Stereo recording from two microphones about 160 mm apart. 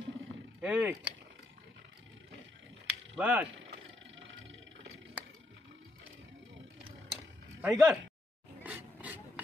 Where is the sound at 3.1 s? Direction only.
10° right (ahead or behind).